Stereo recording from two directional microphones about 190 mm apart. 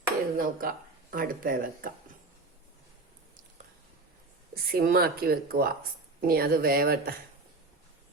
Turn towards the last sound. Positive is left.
turn(degrees=-50)  # may be behind; listen again after turning